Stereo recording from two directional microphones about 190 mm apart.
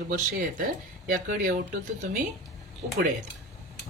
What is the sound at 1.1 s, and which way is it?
Speech, 45° right (ahead or behind).